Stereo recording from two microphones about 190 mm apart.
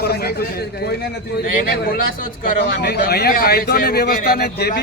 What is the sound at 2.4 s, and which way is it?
Speech, 55° left (ahead or behind).